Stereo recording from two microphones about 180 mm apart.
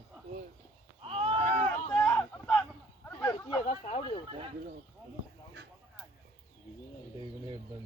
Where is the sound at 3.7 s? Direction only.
35° left (ahead or behind).